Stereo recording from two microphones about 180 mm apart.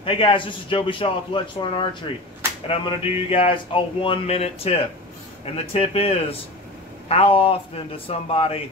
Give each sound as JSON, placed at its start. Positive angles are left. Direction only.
{"t": 0.0, "sound": "a man's voice", "side_deg": 30}